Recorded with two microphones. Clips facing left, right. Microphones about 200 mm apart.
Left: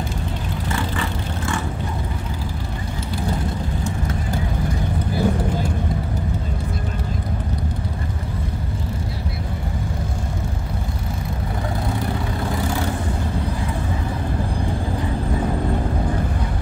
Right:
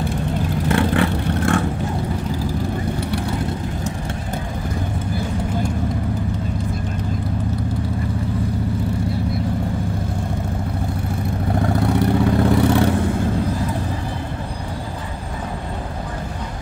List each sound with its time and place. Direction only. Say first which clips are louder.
0.7 s vehicle: right 8 dB; 60° right (ahead or behind)